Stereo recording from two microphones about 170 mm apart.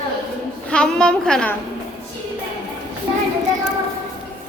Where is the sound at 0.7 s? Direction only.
5° left (ahead or behind).